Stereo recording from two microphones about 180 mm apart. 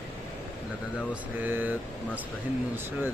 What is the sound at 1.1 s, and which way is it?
Speech, 10° right (ahead or behind).